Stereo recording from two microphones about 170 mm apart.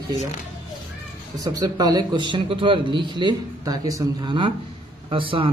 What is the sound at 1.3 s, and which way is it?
A man's voice, 20° right (ahead or behind).